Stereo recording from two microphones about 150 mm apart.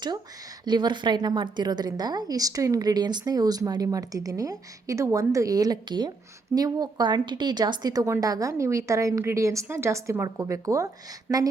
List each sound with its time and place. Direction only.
0.6 s a woman's voice: 30° right (ahead or behind)